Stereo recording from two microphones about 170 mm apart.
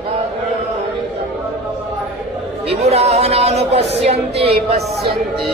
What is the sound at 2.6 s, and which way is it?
Chatter, 35° right (ahead or behind).